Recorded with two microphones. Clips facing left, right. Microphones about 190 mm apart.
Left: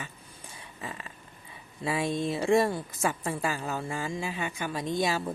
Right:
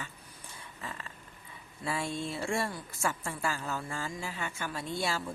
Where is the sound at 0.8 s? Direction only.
15° left (ahead or behind).